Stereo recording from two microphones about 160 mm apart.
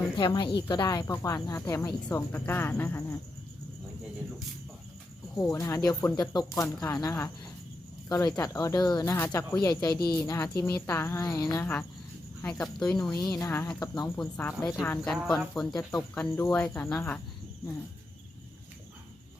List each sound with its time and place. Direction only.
0.2 s speech: 30° left (ahead or behind); by 3.2 s 15° left (ahead or behind)
5.4 s a woman's voice: 20° left (ahead or behind)
8.4 s a woman's voice: 20° left (ahead or behind); by 13.1 s 5° left (ahead or behind)
13.1 s a woman's voice: 25° left (ahead or behind)
13.8 s speech: 25° left (ahead or behind)
14.2 s a woman's voice: 5° left (ahead or behind)